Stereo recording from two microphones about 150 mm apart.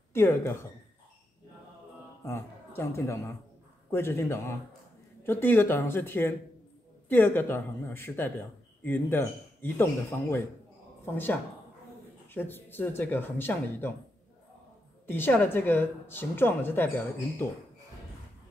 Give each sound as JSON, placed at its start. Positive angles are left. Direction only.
{"t": 0.1, "sound": "speech", "side_deg": 15}
{"t": 2.2, "sound": "a man's voice", "side_deg": 20}
{"t": 12.4, "sound": "speech", "side_deg": 15}
{"t": 15.0, "sound": "speech", "side_deg": 15}